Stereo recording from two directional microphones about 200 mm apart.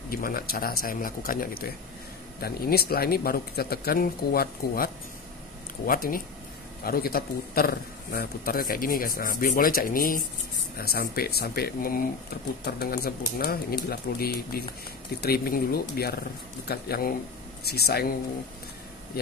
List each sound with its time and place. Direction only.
0.1 s a man's voice: 45° left (ahead or behind)